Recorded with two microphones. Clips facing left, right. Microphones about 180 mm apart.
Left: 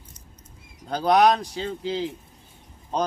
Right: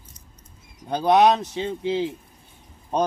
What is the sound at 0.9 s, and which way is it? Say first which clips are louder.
Speech: right 1 dB; 25° right (ahead or behind).